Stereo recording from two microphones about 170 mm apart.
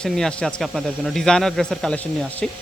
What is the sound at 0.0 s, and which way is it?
Speech, 5° left (ahead or behind).